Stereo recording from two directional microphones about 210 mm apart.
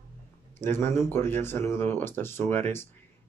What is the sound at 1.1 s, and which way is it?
Speech, 10° left (ahead or behind).